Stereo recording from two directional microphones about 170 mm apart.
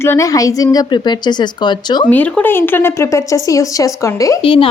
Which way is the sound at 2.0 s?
10° left (ahead or behind).